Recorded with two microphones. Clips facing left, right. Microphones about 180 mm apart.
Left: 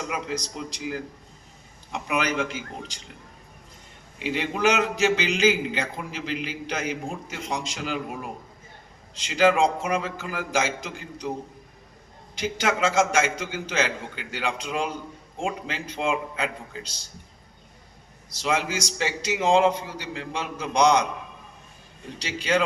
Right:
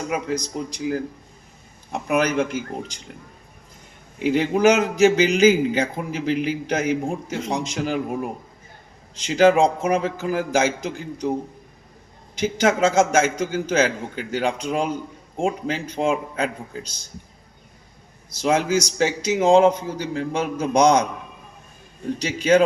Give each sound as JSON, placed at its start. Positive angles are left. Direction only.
{"t": 0.5, "sound": "a man's voice", "side_deg": -45}
{"t": 4.2, "sound": "a man's voice", "side_deg": -45}
{"t": 12.4, "sound": "a man's voice", "side_deg": -45}
{"t": 18.4, "sound": "a man's voice", "side_deg": -45}
{"t": 22.2, "sound": "a man's voice", "side_deg": -45}